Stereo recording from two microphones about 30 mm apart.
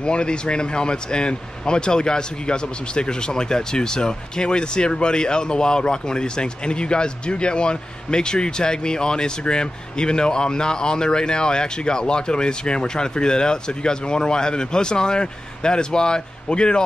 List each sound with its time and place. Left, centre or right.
0.0 s speech: left